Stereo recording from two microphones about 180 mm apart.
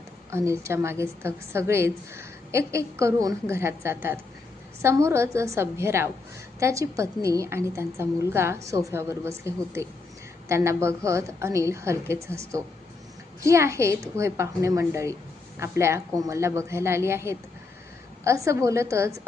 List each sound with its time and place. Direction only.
0.3 s a woman's voice: 15° right (ahead or behind)
13.4 s a woman's voice: 15° right (ahead or behind)